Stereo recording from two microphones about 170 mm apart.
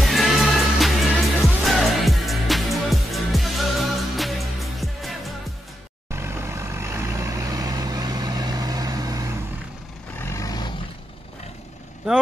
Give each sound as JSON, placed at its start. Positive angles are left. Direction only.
{"t": 0.0, "sound": "music", "side_deg": 0}
{"t": 6.1, "sound": "vehicle", "side_deg": -15}
{"t": 10.1, "sound": "vehicle", "side_deg": 15}